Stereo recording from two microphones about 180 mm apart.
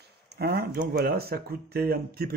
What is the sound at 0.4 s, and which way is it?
Speech, 55° right (ahead or behind).